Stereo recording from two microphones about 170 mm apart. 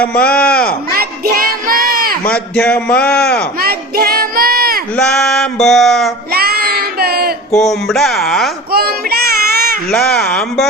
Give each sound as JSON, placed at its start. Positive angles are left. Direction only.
{"t": 0.0, "sound": "a man's voice", "side_deg": 5}
{"t": 0.9, "sound": "crowd", "side_deg": -60}
{"t": 2.2, "sound": "a man's voice", "side_deg": 5}
{"t": 3.6, "sound": "a sound", "side_deg": -65}
{"t": 4.9, "sound": "a sound", "side_deg": 5}
{"t": 6.3, "sound": "child singing", "side_deg": -65}
{"t": 7.6, "sound": "speech", "side_deg": 0}
{"t": 8.7, "sound": "child singing", "side_deg": -65}
{"t": 9.9, "sound": "speech", "side_deg": 0}